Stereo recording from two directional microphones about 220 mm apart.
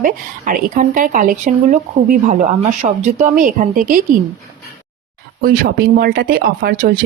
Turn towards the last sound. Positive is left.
turn(degrees=-45)  # may be behind; listen again after turning